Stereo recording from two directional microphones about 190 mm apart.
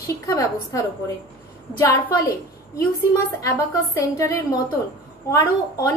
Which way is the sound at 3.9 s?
15° left (ahead or behind).